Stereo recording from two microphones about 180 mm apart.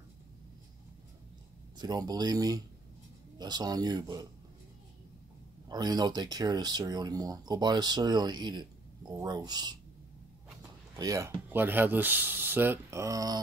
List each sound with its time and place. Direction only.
1.8 s speech: 20° right (ahead or behind)
5.7 s speech: 20° right (ahead or behind)